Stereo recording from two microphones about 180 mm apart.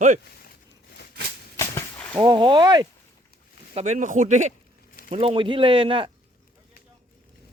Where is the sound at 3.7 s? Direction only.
40° right (ahead or behind).